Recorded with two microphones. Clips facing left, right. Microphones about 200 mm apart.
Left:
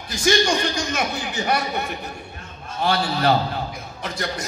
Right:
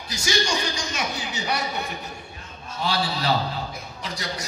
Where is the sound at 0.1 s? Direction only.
55° left (ahead or behind).